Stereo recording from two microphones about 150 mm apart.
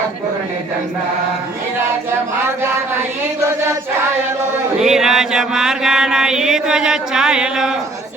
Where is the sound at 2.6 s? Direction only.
15° right (ahead or behind).